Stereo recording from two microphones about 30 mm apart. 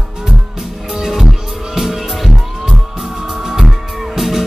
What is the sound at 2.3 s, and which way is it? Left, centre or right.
Music, centre.